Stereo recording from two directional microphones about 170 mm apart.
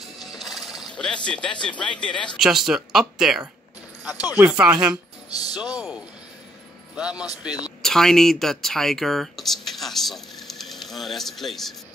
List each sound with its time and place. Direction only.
0.0 s speech: centre (ahead or behind)
4.5 s speech: 5° right (ahead or behind)
5.3 s speech: 20° left (ahead or behind)
7.0 s speech: 5° right (ahead or behind)